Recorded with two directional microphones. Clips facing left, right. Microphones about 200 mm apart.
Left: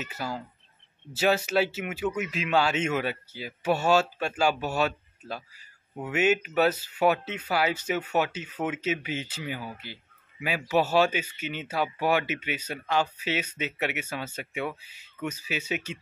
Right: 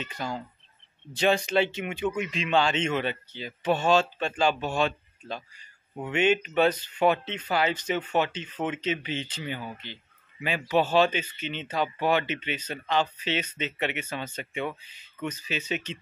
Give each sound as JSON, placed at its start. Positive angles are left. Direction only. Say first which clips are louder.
{"t": 0.0, "sound": "speech", "louder": "even", "side_deg": 5}